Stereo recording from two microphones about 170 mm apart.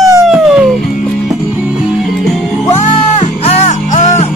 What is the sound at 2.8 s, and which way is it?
Music, 40° left (ahead or behind).